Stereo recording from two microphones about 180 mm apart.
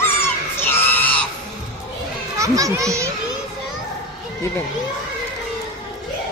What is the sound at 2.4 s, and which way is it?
Speech, 20° right (ahead or behind).